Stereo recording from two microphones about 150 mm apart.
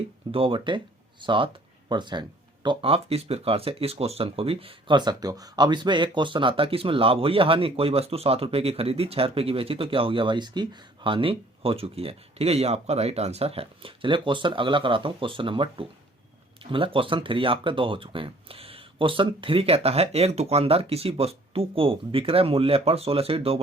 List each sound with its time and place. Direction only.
0.3 s speech: 40° right (ahead or behind)